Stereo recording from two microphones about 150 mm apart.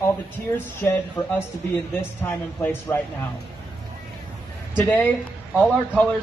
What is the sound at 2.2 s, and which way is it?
Speech, 15° left (ahead or behind).